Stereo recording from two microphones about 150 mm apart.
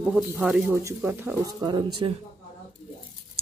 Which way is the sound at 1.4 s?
30° right (ahead or behind).